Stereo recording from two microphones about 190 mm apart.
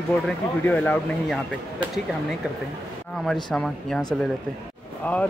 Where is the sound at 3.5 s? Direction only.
5° left (ahead or behind).